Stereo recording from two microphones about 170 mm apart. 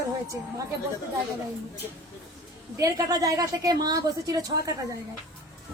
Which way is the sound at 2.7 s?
20° right (ahead or behind).